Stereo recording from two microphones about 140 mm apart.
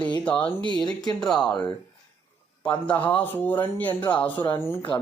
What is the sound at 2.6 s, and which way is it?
Speech, 10° left (ahead or behind).